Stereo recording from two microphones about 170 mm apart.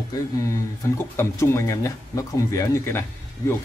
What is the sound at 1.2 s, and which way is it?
Speech, 15° left (ahead or behind).